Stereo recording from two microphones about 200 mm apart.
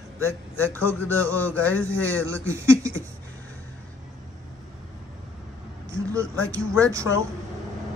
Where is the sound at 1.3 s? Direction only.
10° left (ahead or behind).